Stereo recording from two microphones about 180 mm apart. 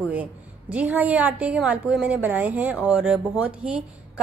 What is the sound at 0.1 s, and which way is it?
A woman's voice, 10° right (ahead or behind).